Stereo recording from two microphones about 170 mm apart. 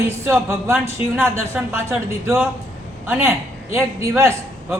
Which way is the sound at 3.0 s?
10° right (ahead or behind).